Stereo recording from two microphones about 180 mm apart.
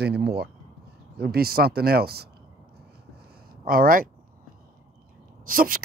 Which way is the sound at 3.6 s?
55° right (ahead or behind).